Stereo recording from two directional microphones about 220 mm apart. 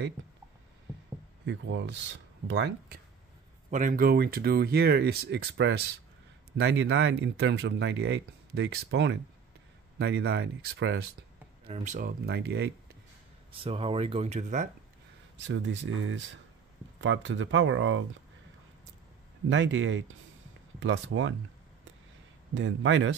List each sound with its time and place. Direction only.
1.4 s speech: 55° right (ahead or behind)
3.7 s speech: 40° right (ahead or behind); by 11.1 s 55° right (ahead or behind)
11.6 s speech: 30° right (ahead or behind); by 12.7 s 50° right (ahead or behind)
13.5 s speech: 25° right (ahead or behind)
15.4 s speech: 55° right (ahead or behind)
19.5 s speech: 55° right (ahead or behind)
22.5 s speech: 55° right (ahead or behind)